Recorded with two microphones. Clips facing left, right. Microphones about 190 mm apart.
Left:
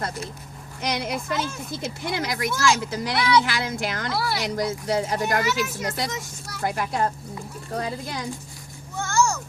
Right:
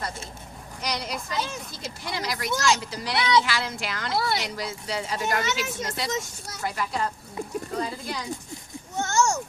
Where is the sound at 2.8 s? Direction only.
50° left (ahead or behind).